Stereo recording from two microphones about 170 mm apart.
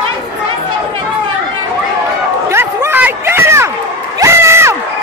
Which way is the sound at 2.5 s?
15° right (ahead or behind).